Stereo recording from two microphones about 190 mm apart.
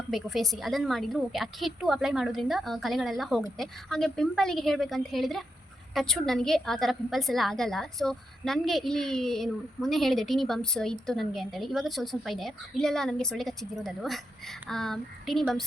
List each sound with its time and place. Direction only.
0.1 s a woman's voice: centre (ahead or behind)